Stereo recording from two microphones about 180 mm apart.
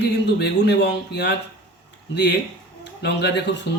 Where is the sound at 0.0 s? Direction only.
70° left (ahead or behind).